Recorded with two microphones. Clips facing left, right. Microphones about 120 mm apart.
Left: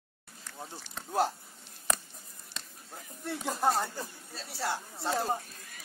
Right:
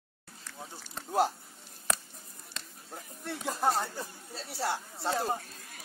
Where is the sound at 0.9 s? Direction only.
10° right (ahead or behind).